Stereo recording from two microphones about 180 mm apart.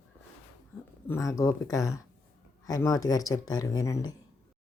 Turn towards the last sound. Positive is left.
turn(degrees=20)  # may be behind; listen again after turning